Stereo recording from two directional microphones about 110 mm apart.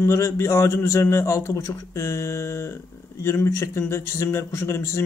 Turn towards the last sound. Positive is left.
turn(degrees=25)  # may be behind; listen again after turning